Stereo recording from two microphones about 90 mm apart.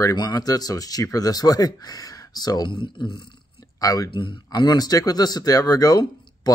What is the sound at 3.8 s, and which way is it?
Speech, 40° left (ahead or behind).